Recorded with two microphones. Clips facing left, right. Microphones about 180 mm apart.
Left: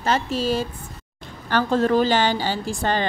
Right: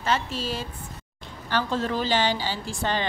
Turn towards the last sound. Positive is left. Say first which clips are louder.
# left 4 dB
turn(degrees=45)  # may be behind; listen again after turning